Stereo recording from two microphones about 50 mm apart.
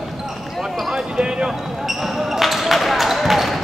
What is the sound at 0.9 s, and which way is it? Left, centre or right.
Speech, centre.